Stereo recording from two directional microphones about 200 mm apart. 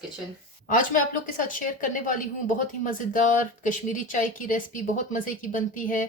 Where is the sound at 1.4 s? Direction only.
40° left (ahead or behind).